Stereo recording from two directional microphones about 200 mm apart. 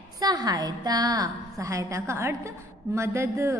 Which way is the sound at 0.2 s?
20° right (ahead or behind).